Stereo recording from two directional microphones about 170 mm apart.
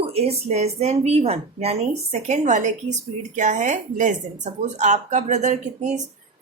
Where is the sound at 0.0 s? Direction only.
35° right (ahead or behind).